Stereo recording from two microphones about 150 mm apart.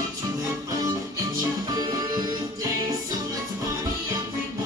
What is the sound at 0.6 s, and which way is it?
Music, 25° right (ahead or behind).